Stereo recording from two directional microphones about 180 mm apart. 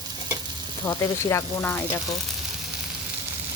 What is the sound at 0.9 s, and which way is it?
Speech, 15° left (ahead or behind).